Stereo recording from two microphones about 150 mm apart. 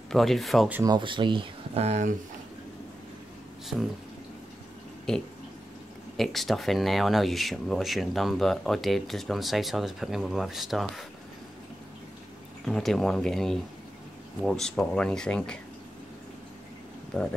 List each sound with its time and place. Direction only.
0.1 s speech: centre (ahead or behind)
0.8 s speech: 30° right (ahead or behind); by 2.1 s 50° right (ahead or behind)
5.1 s speech: 5° left (ahead or behind)
12.6 s speech: centre (ahead or behind)
17.1 s speech: 5° left (ahead or behind)